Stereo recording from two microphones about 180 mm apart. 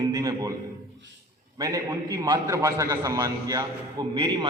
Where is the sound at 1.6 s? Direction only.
20° right (ahead or behind).